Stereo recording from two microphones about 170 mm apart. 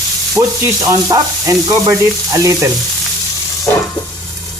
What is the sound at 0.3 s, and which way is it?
Sizzle, 20° right (ahead or behind).